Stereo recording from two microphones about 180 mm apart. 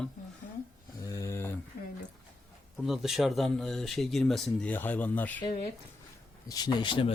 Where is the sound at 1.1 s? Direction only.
15° left (ahead or behind).